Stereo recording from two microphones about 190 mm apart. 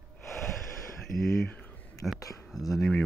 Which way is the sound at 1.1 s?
45° left (ahead or behind).